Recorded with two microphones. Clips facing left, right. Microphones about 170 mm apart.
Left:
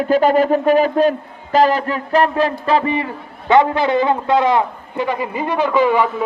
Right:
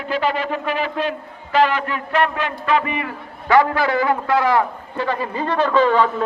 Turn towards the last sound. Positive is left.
turn(degrees=10)  # may be behind; listen again after turning